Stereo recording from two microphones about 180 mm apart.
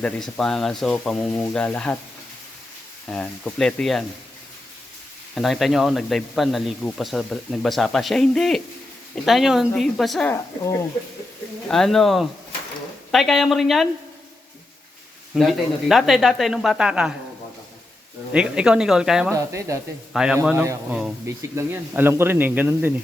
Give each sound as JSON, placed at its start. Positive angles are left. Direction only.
{"t": 0.0, "sound": "speech", "side_deg": 5}
{"t": 3.1, "sound": "speech", "side_deg": 5}
{"t": 5.3, "sound": "speech", "side_deg": 0}
{"t": 10.2, "sound": "speech", "side_deg": 15}
{"t": 11.7, "sound": "speech", "side_deg": 0}
{"t": 15.4, "sound": "speech", "side_deg": 0}
{"t": 18.3, "sound": "speech", "side_deg": -5}
{"t": 19.3, "sound": "speech", "side_deg": -15}
{"t": 20.1, "sound": "speech", "side_deg": -5}